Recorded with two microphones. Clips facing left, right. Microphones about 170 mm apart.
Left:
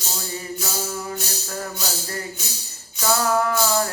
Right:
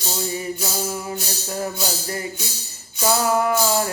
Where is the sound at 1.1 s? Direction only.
20° right (ahead or behind).